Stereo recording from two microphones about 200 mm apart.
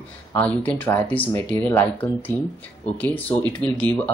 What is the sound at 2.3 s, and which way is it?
Speech, 20° right (ahead or behind).